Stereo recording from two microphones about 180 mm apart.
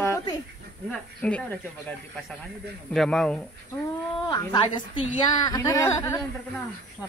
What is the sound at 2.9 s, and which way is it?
Speech, 5° left (ahead or behind).